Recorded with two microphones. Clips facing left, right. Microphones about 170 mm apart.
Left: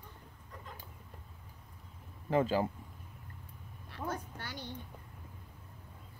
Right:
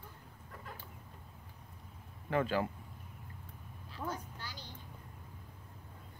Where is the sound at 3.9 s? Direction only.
60° left (ahead or behind).